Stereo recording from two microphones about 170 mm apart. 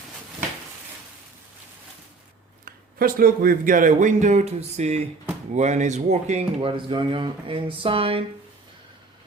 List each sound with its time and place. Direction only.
2.6 s speech: 60° right (ahead or behind); by 8.2 s 35° right (ahead or behind)